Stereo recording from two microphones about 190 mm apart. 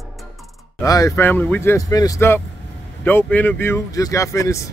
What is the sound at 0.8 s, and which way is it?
Speech, 20° left (ahead or behind).